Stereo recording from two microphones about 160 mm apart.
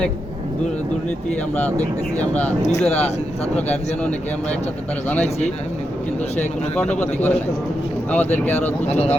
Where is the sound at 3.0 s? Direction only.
40° left (ahead or behind).